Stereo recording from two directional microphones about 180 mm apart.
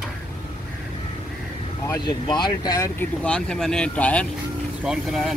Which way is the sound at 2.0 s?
25° left (ahead or behind).